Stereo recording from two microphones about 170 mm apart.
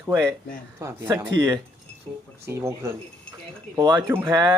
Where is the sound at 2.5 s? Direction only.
15° right (ahead or behind).